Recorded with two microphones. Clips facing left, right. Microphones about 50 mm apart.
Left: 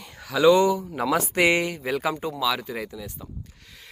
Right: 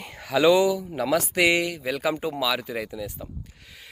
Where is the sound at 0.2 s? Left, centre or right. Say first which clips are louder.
Left 1 dB; centre.